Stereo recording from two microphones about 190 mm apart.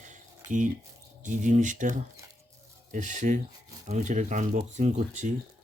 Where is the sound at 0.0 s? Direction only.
40° right (ahead or behind).